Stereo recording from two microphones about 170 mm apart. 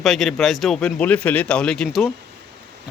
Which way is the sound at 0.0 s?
Centre (ahead or behind).